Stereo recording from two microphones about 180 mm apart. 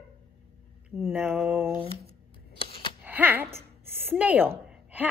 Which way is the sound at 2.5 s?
30° left (ahead or behind).